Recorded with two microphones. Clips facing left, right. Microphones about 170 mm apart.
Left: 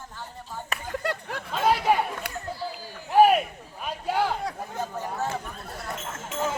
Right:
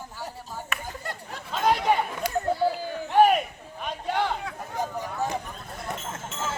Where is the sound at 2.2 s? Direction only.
60° left (ahead or behind).